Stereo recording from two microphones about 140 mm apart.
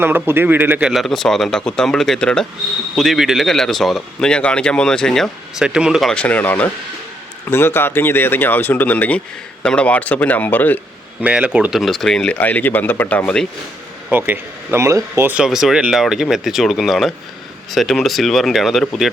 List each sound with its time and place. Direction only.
0.0 s speech: 15° right (ahead or behind); by 10.8 s 15° left (ahead or behind)
11.2 s speech: 10° right (ahead or behind)
14.1 s speech: 15° right (ahead or behind)
15.4 s speech: 5° right (ahead or behind)